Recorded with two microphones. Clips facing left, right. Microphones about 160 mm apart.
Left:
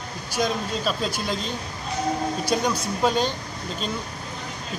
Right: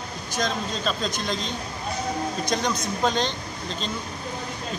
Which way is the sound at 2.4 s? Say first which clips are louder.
Left 1 dB; 10° left (ahead or behind).